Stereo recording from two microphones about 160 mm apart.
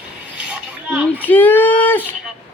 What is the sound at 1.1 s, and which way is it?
Speech, 10° left (ahead or behind).